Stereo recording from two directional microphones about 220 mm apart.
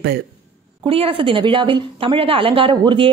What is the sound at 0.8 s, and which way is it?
A woman's voice, 25° right (ahead or behind).